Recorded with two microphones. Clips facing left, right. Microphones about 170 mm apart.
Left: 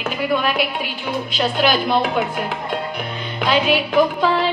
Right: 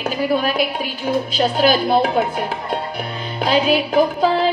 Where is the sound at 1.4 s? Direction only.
40° right (ahead or behind).